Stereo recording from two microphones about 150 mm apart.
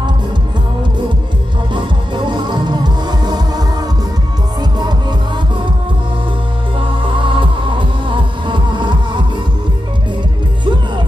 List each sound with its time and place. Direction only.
1.7 s music: 30° right (ahead or behind)
6.8 s music: 35° right (ahead or behind)